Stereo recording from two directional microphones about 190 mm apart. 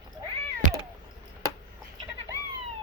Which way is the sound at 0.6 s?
40° right (ahead or behind).